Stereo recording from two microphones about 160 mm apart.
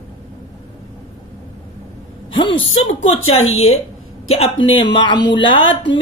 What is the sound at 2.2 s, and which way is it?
Speech, 30° left (ahead or behind).